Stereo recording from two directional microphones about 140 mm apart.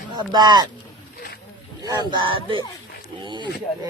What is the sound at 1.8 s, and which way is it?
Speech, 30° right (ahead or behind).